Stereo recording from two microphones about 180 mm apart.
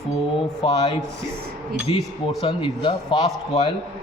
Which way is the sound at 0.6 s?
30° left (ahead or behind).